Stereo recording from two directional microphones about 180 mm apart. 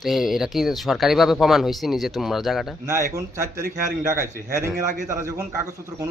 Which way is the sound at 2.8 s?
15° right (ahead or behind).